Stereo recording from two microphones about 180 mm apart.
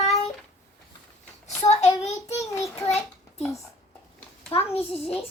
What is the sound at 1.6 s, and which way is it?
Child singing, 40° left (ahead or behind).